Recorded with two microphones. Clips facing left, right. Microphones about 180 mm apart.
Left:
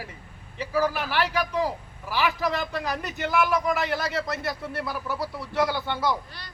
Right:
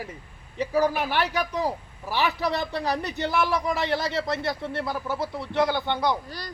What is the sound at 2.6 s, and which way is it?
Speech, 30° right (ahead or behind).